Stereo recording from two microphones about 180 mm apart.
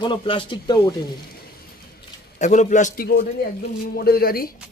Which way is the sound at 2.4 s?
40° left (ahead or behind).